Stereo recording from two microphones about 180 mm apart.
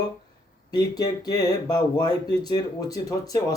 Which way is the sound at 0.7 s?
20° left (ahead or behind).